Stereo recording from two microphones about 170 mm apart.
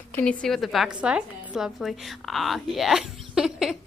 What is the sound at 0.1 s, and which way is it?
A woman's voice, 10° left (ahead or behind).